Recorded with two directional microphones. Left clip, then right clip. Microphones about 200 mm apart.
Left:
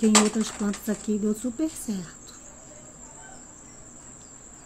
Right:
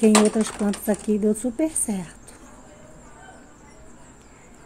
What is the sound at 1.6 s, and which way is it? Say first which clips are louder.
Speech: right 5 dB; centre (ahead or behind).